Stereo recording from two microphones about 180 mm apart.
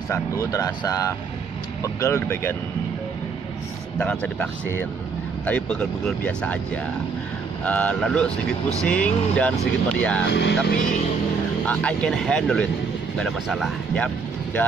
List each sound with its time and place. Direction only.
0.1 s speech: 20° left (ahead or behind)
4.0 s speech: 10° left (ahead or behind)
7.6 s speech: 10° left (ahead or behind)
10.3 s speech: 70° left (ahead or behind)
11.6 s speech: 10° left (ahead or behind)